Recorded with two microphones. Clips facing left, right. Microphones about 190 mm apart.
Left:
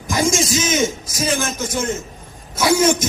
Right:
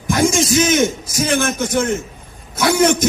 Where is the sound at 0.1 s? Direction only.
60° right (ahead or behind).